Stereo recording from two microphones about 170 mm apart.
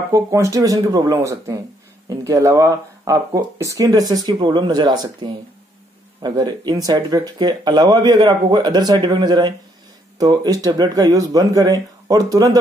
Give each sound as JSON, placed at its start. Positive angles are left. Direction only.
{"t": 0.1, "sound": "speech", "side_deg": -20}